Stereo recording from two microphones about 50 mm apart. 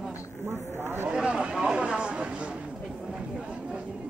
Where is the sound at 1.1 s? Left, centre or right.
Centre.